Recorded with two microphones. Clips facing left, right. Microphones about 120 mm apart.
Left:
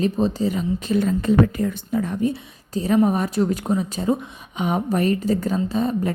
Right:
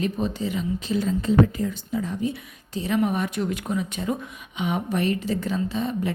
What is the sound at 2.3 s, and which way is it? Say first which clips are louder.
A woman's voice: left 5 dB; 40° left (ahead or behind).